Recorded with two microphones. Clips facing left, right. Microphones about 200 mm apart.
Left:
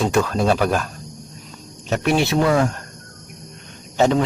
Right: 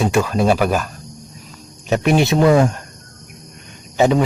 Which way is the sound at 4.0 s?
10° right (ahead or behind).